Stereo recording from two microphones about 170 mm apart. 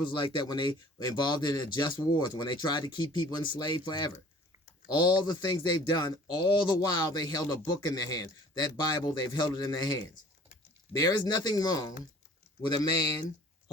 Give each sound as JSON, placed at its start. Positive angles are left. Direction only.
{"t": 0.0, "sound": "speech", "side_deg": 30}